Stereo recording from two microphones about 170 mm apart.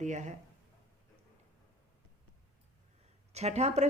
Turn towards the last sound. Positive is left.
turn(degrees=-40)  # may be behind; listen again after turning